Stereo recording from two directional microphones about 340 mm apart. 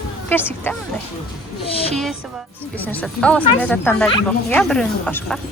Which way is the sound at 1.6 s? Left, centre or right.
Centre.